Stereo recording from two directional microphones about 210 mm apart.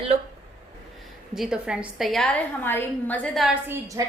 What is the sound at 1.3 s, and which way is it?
A woman's voice, 5° right (ahead or behind).